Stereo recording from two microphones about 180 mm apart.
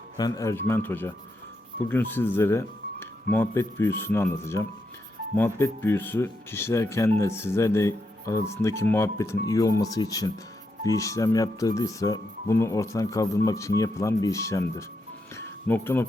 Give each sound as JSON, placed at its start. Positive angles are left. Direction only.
{"t": 0.2, "sound": "speech", "side_deg": 20}
{"t": 15.4, "sound": "music", "side_deg": 10}